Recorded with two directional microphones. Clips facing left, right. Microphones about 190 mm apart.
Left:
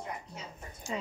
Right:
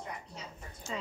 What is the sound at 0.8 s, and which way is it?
Speech, 10° left (ahead or behind).